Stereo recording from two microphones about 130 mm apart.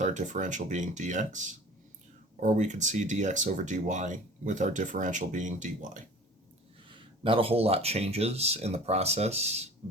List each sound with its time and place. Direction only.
0.0 s speech: 70° right (ahead or behind)
6.8 s speech: 40° right (ahead or behind)